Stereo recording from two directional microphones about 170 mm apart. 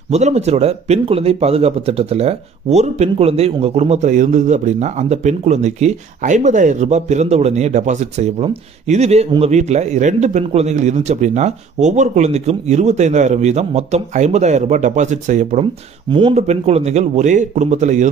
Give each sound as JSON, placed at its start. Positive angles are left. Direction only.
{"t": 0.1, "sound": "speech", "side_deg": -40}
{"t": 16.1, "sound": "speech", "side_deg": -30}
{"t": 16.4, "sound": "speech", "side_deg": -40}